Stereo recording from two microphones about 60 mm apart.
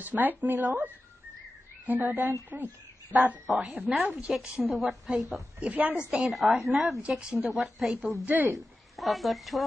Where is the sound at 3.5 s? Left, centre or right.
Centre.